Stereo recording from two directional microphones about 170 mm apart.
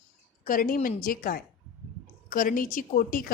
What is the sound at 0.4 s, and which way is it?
A woman's voice, 55° left (ahead or behind).